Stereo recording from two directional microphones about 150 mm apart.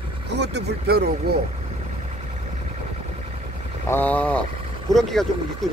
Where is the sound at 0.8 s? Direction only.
90° right.